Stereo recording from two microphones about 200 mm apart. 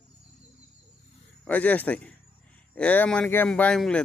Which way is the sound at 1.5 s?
10° left (ahead or behind).